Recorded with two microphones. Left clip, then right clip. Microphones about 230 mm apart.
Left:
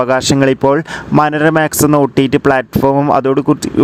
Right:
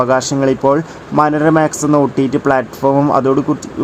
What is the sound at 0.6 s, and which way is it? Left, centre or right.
Speech, left.